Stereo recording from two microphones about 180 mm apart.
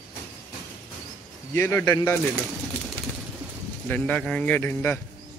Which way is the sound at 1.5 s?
15° left (ahead or behind).